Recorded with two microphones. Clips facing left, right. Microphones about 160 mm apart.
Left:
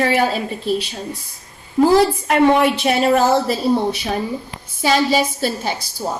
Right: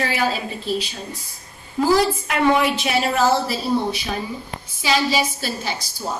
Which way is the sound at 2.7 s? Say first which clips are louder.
Left 5 dB; 55° left (ahead or behind).